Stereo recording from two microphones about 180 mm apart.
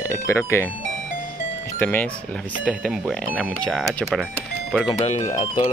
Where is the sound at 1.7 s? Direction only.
10° left (ahead or behind).